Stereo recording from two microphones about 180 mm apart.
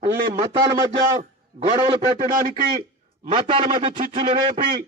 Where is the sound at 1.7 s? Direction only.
30° right (ahead or behind).